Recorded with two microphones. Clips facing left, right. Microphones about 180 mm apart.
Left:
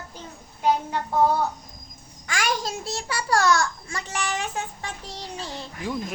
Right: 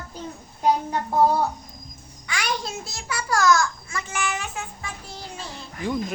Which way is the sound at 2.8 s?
30° left (ahead or behind).